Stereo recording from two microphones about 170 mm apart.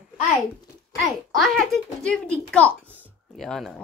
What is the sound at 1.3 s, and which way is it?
A child's voice, centre (ahead or behind).